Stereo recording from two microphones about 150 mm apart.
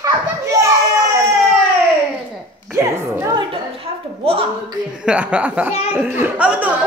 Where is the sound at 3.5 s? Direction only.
40° right (ahead or behind).